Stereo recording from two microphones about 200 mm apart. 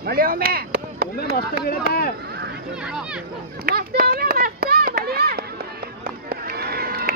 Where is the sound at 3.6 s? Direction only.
50° right (ahead or behind).